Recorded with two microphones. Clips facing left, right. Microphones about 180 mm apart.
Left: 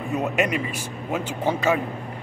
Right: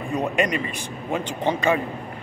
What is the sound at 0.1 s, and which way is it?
A man's voice, 5° left (ahead or behind).